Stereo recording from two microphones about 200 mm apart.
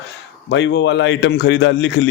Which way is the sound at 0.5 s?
65° left (ahead or behind).